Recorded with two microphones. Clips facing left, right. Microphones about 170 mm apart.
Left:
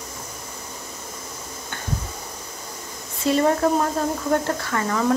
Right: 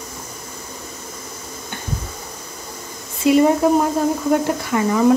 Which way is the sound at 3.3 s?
15° right (ahead or behind).